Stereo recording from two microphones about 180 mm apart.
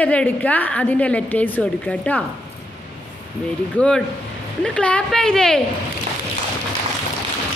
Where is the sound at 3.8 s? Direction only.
5° left (ahead or behind).